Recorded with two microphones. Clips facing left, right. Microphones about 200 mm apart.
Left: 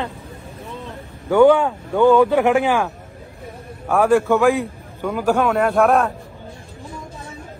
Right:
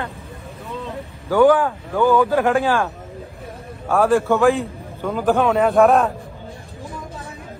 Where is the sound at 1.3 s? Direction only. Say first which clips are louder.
Left 2 dB; 25° left (ahead or behind).